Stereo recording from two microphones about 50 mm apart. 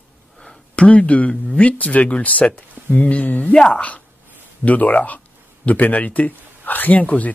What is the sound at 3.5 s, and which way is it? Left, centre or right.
Speech, centre.